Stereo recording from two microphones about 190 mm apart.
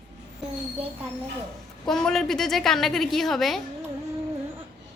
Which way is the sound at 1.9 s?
5° left (ahead or behind).